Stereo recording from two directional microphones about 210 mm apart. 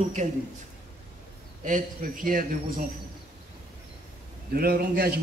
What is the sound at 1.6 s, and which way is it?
Speech, 40° right (ahead or behind).